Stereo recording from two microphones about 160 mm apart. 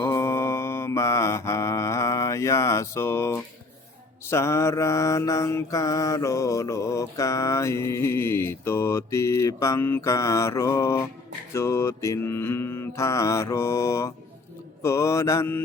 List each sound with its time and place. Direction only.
0.0 s mantra: 15° left (ahead or behind)